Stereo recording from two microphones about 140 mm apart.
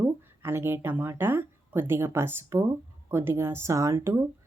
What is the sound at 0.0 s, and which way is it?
Speech, 15° right (ahead or behind).